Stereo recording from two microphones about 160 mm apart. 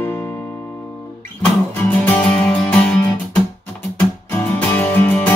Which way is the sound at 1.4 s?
10° left (ahead or behind).